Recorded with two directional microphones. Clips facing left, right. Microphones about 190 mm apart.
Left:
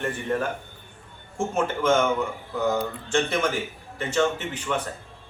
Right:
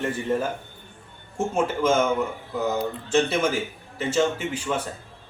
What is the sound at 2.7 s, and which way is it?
A man's voice, 5° right (ahead or behind).